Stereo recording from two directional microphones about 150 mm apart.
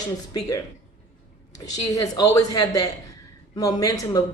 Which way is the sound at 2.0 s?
25° left (ahead or behind).